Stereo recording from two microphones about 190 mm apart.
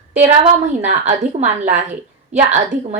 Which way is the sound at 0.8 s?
40° right (ahead or behind).